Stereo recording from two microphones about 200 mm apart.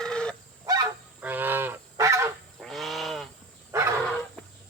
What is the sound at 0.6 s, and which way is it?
Goose, 20° right (ahead or behind).